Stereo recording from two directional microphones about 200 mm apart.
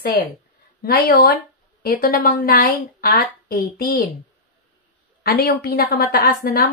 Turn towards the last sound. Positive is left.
turn(degrees=50)  # may be behind; listen again after turning